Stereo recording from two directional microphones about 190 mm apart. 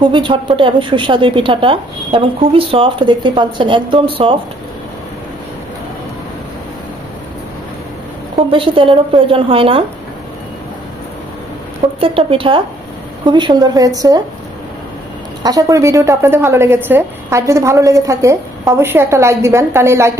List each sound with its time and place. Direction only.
0.0 s a woman's voice: 25° right (ahead or behind)
8.4 s a woman's voice: 25° right (ahead or behind)
12.0 s a woman's voice: 30° right (ahead or behind)
15.4 s a woman's voice: 20° right (ahead or behind)